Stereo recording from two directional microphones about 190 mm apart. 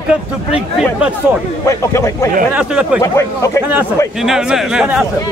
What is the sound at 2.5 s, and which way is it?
Speech, 5° right (ahead or behind).